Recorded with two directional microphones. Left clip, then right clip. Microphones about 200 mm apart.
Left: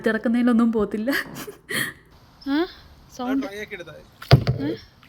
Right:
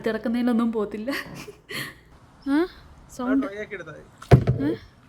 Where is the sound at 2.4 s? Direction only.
5° right (ahead or behind).